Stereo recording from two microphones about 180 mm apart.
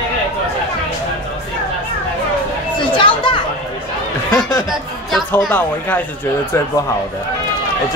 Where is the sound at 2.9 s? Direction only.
30° left (ahead or behind).